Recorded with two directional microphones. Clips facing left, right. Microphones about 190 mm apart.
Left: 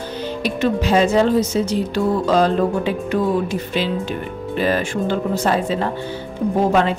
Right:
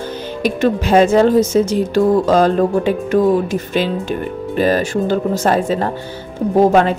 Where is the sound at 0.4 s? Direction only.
50° right (ahead or behind).